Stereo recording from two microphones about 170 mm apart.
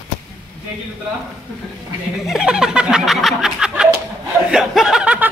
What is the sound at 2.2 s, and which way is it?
Snicker, 5° right (ahead or behind).